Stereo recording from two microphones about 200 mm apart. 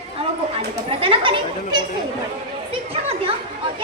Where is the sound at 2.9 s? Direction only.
30° right (ahead or behind).